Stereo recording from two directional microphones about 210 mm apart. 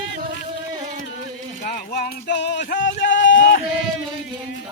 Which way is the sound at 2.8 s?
60° left (ahead or behind).